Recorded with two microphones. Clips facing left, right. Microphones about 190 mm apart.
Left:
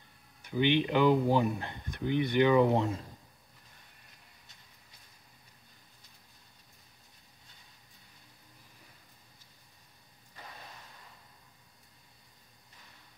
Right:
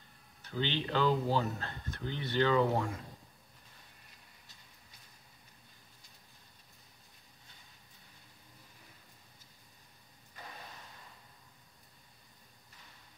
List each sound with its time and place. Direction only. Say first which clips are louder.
0.4 s speech: left 8 dB; 15° left (ahead or behind)